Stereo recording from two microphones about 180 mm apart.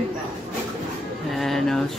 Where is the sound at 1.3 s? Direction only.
Centre (ahead or behind).